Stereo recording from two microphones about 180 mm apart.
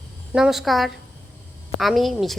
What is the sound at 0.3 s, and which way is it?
A woman's voice, centre (ahead or behind).